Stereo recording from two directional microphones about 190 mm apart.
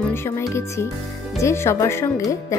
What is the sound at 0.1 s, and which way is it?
Speech, 15° left (ahead or behind).